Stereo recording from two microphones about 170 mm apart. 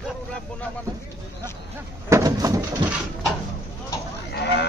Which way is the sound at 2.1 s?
20° right (ahead or behind).